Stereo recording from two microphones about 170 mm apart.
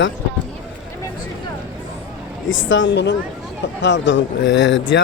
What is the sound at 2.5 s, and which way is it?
Speech, 90° left.